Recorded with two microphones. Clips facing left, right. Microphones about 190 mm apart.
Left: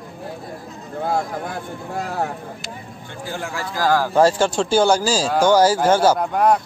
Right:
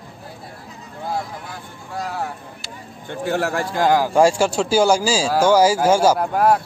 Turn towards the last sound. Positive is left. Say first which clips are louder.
# even
turn(degrees=-5)  # may be behind; listen again after turning